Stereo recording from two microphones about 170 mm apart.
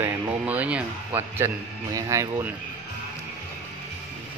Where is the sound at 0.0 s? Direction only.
10° right (ahead or behind).